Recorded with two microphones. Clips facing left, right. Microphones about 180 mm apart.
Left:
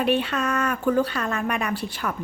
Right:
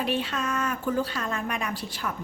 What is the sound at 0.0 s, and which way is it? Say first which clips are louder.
Speech: left 5 dB; 60° left (ahead or behind).